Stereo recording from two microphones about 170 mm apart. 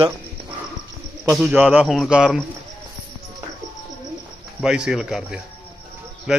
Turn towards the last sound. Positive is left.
turn(degrees=-5)  # may be behind; listen again after turning